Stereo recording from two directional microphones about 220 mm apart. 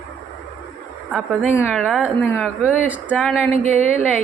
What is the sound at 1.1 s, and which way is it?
Speech, centre (ahead or behind).